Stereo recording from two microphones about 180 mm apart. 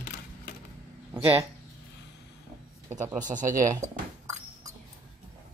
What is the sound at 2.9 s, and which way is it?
Speech, 45° right (ahead or behind).